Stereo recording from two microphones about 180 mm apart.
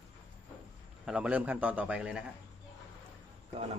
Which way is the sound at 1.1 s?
5° right (ahead or behind).